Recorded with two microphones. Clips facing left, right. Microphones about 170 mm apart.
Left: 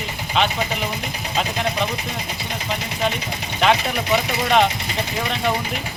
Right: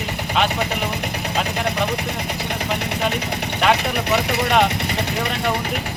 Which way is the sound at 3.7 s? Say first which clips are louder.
Right 1 dB; 65° right (ahead or behind).